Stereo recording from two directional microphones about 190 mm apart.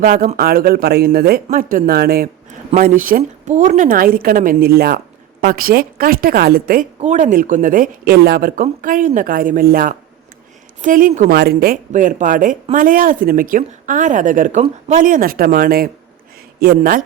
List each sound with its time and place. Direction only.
0.0 s a woman's voice: 45° right (ahead or behind)
11.3 s a woman's voice: 55° right (ahead or behind)